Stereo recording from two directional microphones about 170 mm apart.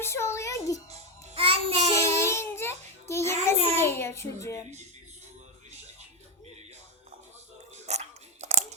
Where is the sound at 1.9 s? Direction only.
15° left (ahead or behind).